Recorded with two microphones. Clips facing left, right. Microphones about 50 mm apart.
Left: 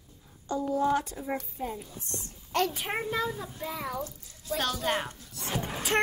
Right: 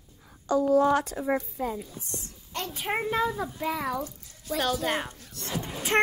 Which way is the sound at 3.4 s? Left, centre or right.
Right.